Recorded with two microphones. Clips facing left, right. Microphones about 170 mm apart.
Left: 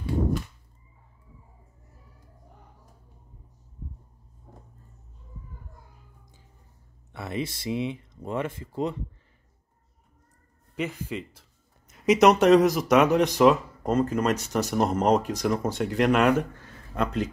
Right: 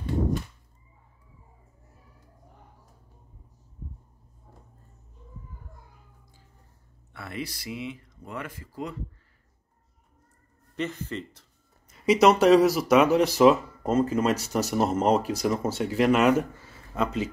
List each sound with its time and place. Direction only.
7.1 s speech: 20° left (ahead or behind)
10.8 s speech: 10° left (ahead or behind)
11.9 s speech: centre (ahead or behind)